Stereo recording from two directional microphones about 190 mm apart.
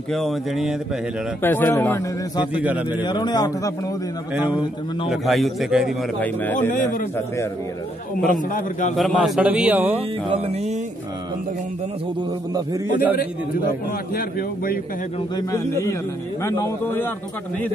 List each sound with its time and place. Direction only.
0.1 s a man's voice: centre (ahead or behind)
1.4 s speech: 10° left (ahead or behind)
3.0 s a man's voice: 20° left (ahead or behind)
5.1 s a man's voice: centre (ahead or behind)
6.1 s speech: 10° left (ahead or behind)
6.7 s a man's voice: 45° left (ahead or behind)
8.3 s a man's voice: 45° left (ahead or behind)
8.9 s a man's voice: centre (ahead or behind)
10.3 s music: 35° right (ahead or behind)
14.1 s a man's voice: 50° left (ahead or behind)
15.3 s speech: 15° left (ahead or behind)